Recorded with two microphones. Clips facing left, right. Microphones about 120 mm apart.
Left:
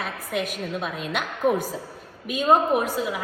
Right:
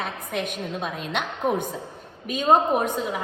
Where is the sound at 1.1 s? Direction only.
5° left (ahead or behind).